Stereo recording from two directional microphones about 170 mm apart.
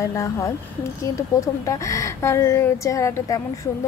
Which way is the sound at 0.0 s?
20° left (ahead or behind).